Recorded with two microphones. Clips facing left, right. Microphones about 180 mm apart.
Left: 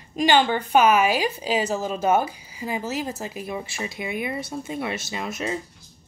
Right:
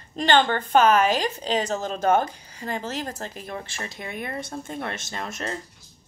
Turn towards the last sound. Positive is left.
turn(degrees=5)  # may be behind; listen again after turning